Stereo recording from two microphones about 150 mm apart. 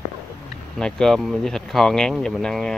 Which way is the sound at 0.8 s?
5° left (ahead or behind).